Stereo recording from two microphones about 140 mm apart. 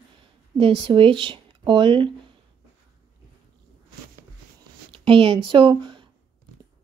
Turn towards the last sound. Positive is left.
turn(degrees=-35)  # may be behind; listen again after turning